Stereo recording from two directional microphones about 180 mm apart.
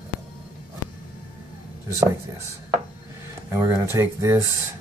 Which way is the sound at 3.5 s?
15° right (ahead or behind).